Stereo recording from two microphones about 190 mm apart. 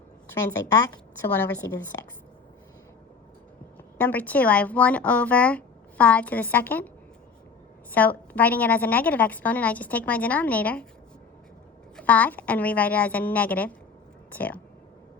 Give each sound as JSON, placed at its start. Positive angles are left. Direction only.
{"t": 0.7, "sound": "a woman's voice", "side_deg": 20}
{"t": 3.9, "sound": "speech", "side_deg": 10}
{"t": 7.9, "sound": "speech", "side_deg": 10}
{"t": 11.9, "sound": "speech", "side_deg": 10}